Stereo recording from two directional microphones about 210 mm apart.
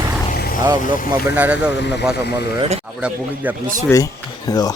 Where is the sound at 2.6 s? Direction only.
30° right (ahead or behind).